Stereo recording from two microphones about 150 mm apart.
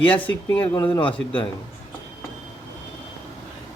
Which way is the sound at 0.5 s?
35° left (ahead or behind).